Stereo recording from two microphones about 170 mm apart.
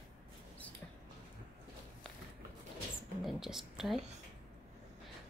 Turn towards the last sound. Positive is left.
turn(degrees=0)  # may be behind; listen again after turning